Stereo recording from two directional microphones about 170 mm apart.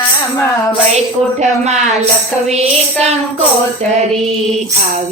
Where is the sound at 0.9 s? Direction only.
40° right (ahead or behind).